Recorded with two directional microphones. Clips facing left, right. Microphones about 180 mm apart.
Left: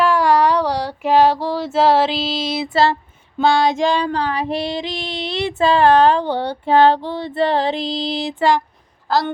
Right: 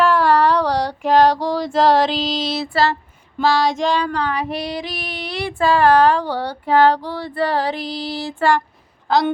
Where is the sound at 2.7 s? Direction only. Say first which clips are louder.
Left 4 dB; 25° left (ahead or behind).